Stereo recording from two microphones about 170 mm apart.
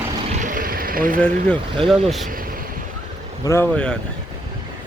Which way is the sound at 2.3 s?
55° right (ahead or behind).